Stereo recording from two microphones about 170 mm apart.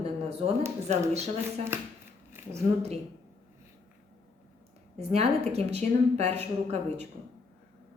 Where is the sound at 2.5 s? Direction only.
40° right (ahead or behind).